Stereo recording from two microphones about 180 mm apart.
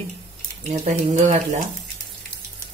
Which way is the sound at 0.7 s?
40° right (ahead or behind).